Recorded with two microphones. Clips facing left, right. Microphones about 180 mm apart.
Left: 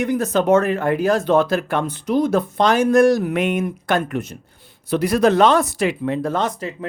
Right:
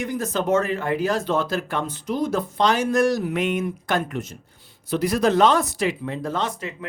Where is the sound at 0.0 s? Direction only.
65° left (ahead or behind).